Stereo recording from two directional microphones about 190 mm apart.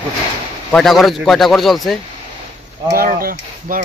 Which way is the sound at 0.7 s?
Centre (ahead or behind).